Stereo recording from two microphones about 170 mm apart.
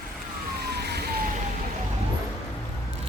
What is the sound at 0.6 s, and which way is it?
Emergency vehicle, 75° right (ahead or behind).